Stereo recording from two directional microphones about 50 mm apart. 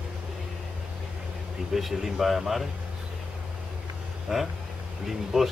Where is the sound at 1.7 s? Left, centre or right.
Centre.